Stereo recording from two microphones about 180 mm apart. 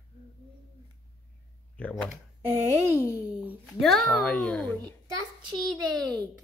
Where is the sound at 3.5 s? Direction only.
Centre (ahead or behind).